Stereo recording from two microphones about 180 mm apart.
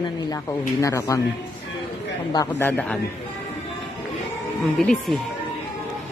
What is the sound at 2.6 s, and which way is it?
Speech, 10° left (ahead or behind).